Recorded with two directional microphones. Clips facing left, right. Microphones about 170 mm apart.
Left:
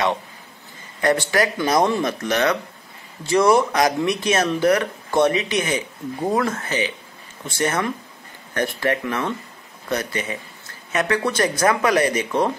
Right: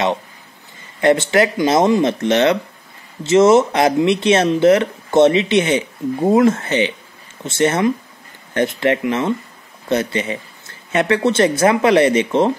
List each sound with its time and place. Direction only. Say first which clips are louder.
1.0 s speech: right 5 dB; 25° right (ahead or behind)